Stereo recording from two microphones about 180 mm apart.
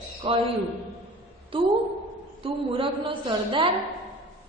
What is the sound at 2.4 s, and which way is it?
A woman's voice, 30° right (ahead or behind).